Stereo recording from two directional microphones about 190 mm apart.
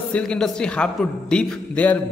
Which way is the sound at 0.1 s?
5° left (ahead or behind).